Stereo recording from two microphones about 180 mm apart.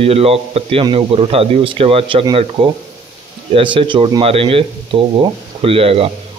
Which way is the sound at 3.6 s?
30° right (ahead or behind).